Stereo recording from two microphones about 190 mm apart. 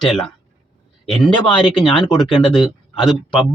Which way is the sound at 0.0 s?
5° left (ahead or behind).